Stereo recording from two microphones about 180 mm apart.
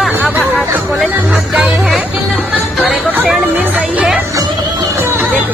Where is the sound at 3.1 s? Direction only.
10° right (ahead or behind).